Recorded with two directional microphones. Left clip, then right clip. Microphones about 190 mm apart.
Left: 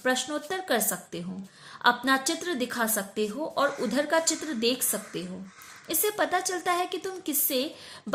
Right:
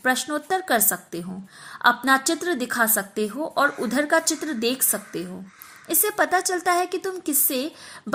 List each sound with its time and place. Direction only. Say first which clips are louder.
0.0 s a woman's voice: right 4 dB; 30° right (ahead or behind)